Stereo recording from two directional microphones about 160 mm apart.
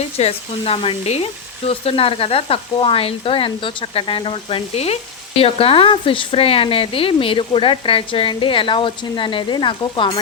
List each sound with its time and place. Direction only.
0.0 s speech: 40° left (ahead or behind)